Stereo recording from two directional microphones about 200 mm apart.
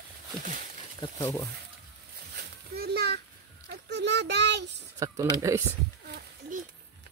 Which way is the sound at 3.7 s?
55° right (ahead or behind).